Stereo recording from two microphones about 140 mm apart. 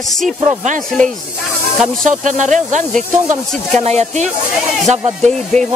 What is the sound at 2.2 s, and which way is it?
Speech, 60° right (ahead or behind).